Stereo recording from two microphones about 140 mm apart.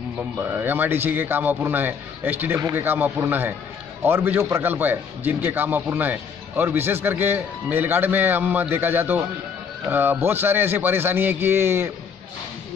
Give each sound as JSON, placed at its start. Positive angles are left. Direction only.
{"t": 0.2, "sound": "a man's voice", "side_deg": -15}